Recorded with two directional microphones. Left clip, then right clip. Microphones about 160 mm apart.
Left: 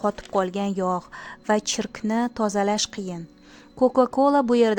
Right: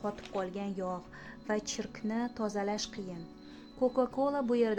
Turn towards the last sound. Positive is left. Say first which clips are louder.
# left 11 dB
turn(degrees=50)  # may be behind; listen again after turning